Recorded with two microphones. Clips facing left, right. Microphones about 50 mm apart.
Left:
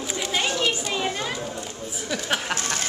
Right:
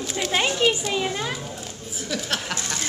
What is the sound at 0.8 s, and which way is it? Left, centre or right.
Speech, centre.